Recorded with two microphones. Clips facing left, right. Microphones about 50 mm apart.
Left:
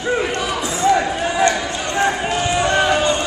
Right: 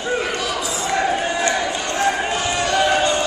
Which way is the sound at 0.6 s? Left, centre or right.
Left.